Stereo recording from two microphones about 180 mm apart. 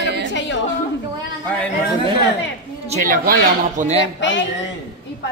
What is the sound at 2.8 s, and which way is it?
Speech, 50° right (ahead or behind).